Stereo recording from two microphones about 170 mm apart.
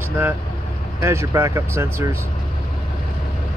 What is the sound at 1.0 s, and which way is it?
Speech, 15° right (ahead or behind).